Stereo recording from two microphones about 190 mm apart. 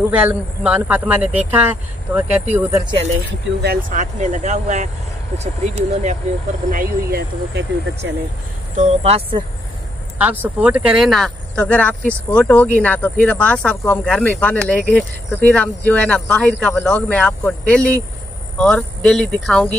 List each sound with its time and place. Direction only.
0.1 s a man's voice: 10° right (ahead or behind)
2.8 s speech: 25° right (ahead or behind)
3.6 s speech: 45° right (ahead or behind)
6.7 s speech: 50° right (ahead or behind)
8.7 s speech: 35° right (ahead or behind)
10.1 s speech: 10° right (ahead or behind); by 19.8 s 5° left (ahead or behind)